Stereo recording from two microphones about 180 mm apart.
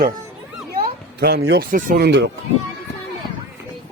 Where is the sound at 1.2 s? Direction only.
65° right (ahead or behind).